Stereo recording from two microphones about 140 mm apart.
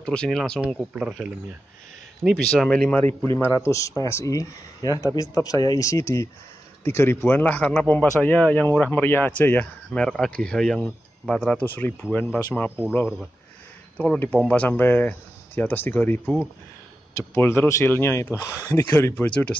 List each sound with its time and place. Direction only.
0.0 s speech: 5° left (ahead or behind)
13.9 s speech: 10° left (ahead or behind)